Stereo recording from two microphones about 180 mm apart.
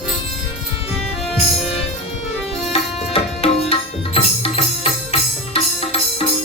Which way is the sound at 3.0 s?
35° left (ahead or behind).